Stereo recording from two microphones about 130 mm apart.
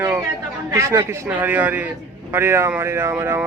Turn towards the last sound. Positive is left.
turn(degrees=-15)  # may be behind; listen again after turning